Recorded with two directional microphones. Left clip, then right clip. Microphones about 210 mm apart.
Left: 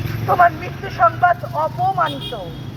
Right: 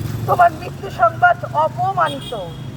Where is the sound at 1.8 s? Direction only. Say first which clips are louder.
Even; 35° right (ahead or behind).